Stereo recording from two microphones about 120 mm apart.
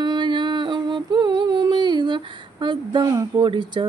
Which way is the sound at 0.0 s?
40° right (ahead or behind).